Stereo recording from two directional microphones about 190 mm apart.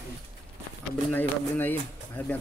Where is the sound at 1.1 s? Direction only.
10° left (ahead or behind).